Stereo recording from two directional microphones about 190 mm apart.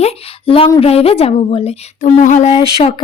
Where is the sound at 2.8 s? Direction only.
30° left (ahead or behind).